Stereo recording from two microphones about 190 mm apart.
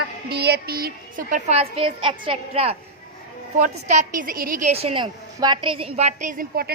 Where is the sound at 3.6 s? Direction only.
40° right (ahead or behind).